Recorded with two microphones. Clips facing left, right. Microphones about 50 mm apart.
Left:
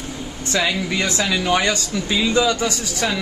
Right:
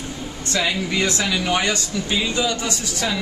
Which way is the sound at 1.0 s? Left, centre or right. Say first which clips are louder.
Left 2 dB; left.